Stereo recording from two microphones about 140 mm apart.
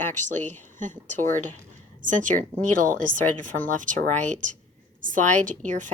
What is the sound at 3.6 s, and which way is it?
Speech, 65° right (ahead or behind).